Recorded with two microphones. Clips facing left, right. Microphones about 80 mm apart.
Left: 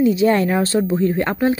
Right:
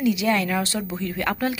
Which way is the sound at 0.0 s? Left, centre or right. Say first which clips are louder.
Left 6 dB; left.